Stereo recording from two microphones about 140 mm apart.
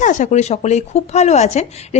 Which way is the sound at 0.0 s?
60° left (ahead or behind).